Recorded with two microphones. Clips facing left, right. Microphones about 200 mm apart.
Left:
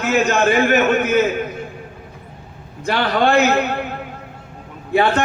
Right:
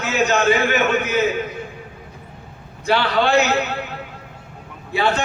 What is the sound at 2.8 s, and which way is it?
A man's voice, 50° left (ahead or behind).